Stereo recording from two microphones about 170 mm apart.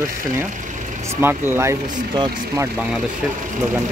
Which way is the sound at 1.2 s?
15° right (ahead or behind).